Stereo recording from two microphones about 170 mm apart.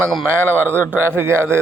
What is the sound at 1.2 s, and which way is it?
Speech, 15° right (ahead or behind).